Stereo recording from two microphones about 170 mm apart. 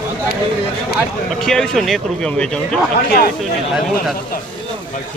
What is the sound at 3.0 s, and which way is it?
Speech, 60° left (ahead or behind).